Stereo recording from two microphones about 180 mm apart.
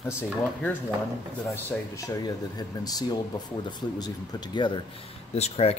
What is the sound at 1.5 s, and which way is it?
Speech, 20° left (ahead or behind).